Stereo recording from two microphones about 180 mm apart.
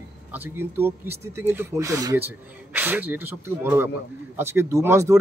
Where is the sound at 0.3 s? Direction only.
10° right (ahead or behind).